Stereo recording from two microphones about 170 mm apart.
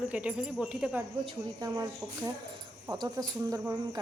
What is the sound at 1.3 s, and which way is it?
Speech, 20° right (ahead or behind).